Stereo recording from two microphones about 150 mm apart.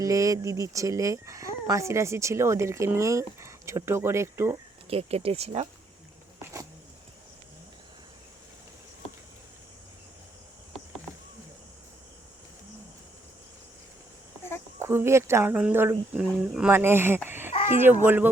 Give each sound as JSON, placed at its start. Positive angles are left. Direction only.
{"t": 0.0, "sound": "speech", "side_deg": -20}
{"t": 4.9, "sound": "speech", "side_deg": -40}
{"t": 14.8, "sound": "a child's voice", "side_deg": -15}